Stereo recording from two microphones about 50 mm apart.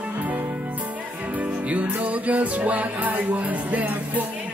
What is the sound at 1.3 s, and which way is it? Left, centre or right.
Music, right.